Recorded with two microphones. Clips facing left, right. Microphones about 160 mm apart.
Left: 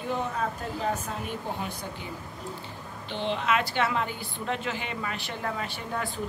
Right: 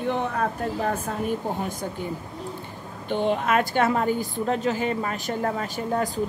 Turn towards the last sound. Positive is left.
turn(degrees=-40)  # may be behind; listen again after turning